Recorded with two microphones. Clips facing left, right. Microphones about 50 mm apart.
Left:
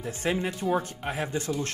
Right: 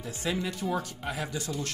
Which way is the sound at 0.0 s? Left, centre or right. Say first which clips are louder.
Left 4 dB; left.